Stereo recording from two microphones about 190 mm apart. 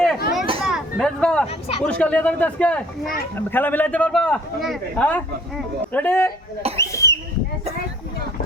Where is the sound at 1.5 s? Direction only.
30° left (ahead or behind).